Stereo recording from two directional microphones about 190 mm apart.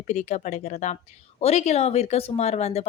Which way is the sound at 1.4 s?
35° left (ahead or behind).